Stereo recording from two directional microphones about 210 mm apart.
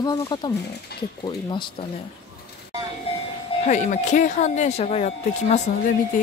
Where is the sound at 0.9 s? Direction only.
50° left (ahead or behind).